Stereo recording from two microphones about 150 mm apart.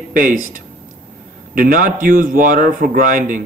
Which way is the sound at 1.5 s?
65° right (ahead or behind).